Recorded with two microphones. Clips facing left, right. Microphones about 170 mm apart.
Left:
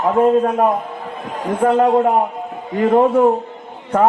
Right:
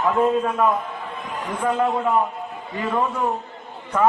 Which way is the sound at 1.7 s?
45° left (ahead or behind).